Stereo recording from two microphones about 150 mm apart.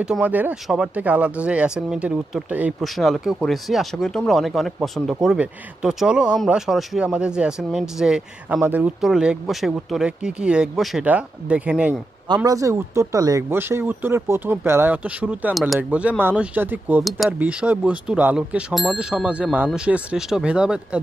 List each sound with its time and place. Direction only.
0.0 s speech: 10° right (ahead or behind)
12.4 s speech: 20° right (ahead or behind); by 21.0 s 5° right (ahead or behind)